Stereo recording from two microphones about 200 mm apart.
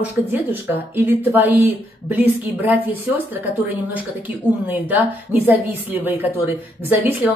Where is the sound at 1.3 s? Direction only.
10° right (ahead or behind).